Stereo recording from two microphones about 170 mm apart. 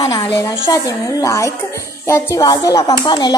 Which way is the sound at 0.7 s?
20° left (ahead or behind).